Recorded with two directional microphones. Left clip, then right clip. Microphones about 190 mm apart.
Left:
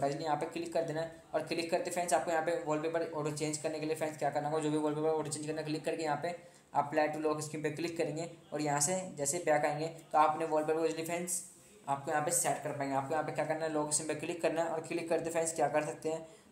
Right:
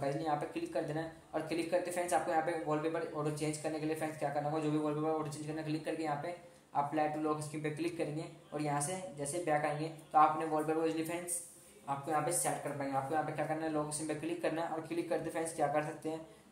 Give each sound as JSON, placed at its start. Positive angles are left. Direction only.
{"t": 0.0, "sound": "speech", "side_deg": 25}
{"t": 13.1, "sound": "speech", "side_deg": 30}